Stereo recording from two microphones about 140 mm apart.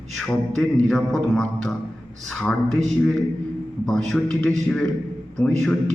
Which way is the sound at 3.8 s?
5° left (ahead or behind).